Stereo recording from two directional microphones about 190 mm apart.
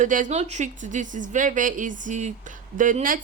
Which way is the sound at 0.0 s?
40° right (ahead or behind).